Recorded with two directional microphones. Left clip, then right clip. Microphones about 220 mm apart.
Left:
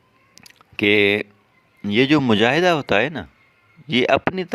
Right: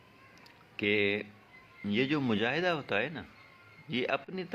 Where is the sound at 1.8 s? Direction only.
45° left (ahead or behind).